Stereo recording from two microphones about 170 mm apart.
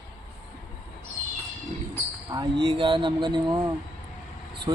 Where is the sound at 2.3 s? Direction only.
25° right (ahead or behind).